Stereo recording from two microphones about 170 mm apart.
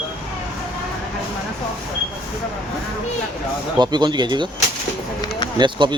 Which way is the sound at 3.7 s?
25° right (ahead or behind).